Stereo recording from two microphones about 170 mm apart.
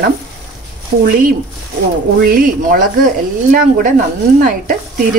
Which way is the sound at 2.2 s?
55° right (ahead or behind).